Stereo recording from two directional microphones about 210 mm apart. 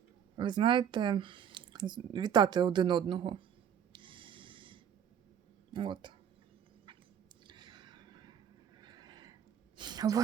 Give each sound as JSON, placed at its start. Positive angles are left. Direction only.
{"t": 0.3, "sound": "speech", "side_deg": -20}
{"t": 3.9, "sound": "snort", "side_deg": -25}
{"t": 5.7, "sound": "speech", "side_deg": -20}
{"t": 7.4, "sound": "a sound", "side_deg": -20}